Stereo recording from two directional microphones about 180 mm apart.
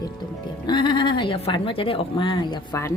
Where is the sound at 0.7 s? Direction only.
25° left (ahead or behind).